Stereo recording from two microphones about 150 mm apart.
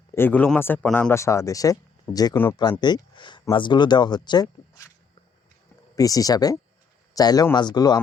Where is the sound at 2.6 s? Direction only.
30° left (ahead or behind).